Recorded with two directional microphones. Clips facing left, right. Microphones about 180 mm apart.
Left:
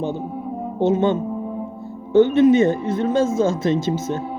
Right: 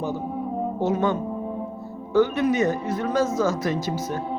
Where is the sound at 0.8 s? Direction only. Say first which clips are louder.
Left 6 dB; 25° left (ahead or behind).